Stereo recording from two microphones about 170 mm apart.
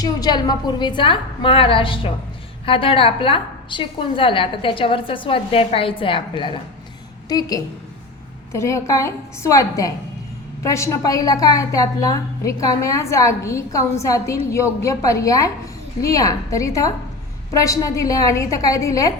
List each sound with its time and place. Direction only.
0.0 s a woman's voice: 25° left (ahead or behind)